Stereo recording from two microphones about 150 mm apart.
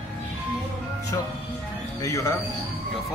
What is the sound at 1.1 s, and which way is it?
Speech, 25° left (ahead or behind).